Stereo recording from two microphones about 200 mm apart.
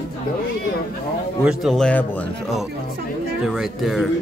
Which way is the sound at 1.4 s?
Centre (ahead or behind).